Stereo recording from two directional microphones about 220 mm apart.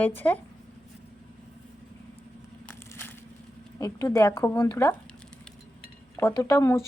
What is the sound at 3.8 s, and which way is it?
Speech, 15° left (ahead or behind).